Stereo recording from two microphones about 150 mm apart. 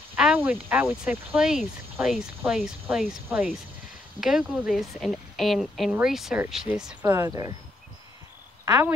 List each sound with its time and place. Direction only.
0.1 s a sound: 10° right (ahead or behind)
0.8 s speech: 5° right (ahead or behind)
4.2 s speech: 5° right (ahead or behind)
7.1 s speech: 20° right (ahead or behind)
8.6 s speech: 10° right (ahead or behind)